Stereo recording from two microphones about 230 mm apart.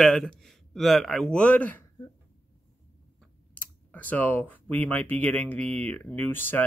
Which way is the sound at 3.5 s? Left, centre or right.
Centre.